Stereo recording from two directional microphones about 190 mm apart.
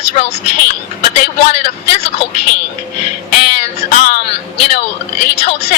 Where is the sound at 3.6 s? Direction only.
45° left (ahead or behind).